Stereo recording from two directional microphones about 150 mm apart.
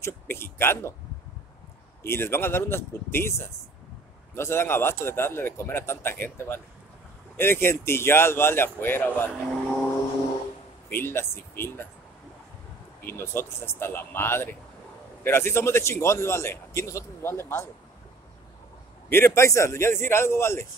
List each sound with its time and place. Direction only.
0.0 s a man's voice: 15° left (ahead or behind)
2.0 s a man's voice: 15° left (ahead or behind)
9.5 s vehicle: centre (ahead or behind)
10.9 s a man's voice: 15° left (ahead or behind)
13.0 s a man's voice: 15° left (ahead or behind)
19.0 s a man's voice: 15° left (ahead or behind)